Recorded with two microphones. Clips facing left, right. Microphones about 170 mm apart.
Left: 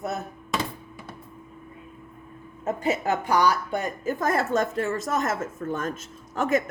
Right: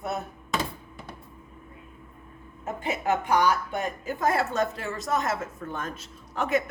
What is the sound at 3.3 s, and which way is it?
A woman's voice, 40° left (ahead or behind).